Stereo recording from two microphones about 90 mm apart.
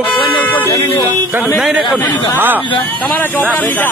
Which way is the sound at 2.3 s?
20° right (ahead or behind).